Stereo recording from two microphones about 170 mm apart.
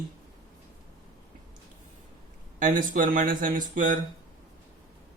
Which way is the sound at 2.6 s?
50° right (ahead or behind).